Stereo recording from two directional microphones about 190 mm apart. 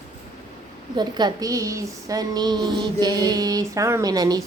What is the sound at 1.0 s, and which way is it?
Speech, 20° right (ahead or behind).